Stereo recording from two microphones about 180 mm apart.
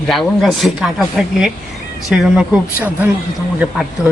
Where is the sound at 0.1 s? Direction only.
Centre (ahead or behind).